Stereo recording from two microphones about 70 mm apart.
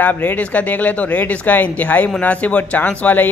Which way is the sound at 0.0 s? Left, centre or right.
Left.